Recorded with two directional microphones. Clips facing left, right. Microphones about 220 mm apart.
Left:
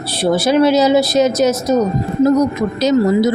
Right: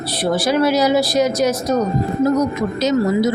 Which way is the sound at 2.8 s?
35° left (ahead or behind).